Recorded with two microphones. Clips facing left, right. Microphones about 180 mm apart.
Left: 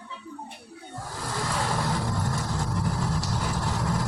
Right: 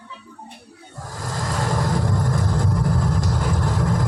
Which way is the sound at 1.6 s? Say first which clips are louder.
Right 5 dB; 45° right (ahead or behind).